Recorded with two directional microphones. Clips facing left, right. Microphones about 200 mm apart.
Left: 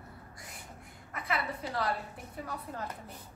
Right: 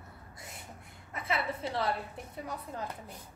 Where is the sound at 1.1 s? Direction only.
25° right (ahead or behind).